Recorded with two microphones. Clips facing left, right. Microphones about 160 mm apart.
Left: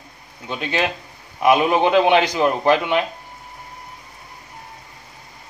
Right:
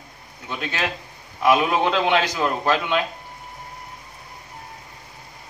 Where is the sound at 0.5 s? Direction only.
20° left (ahead or behind).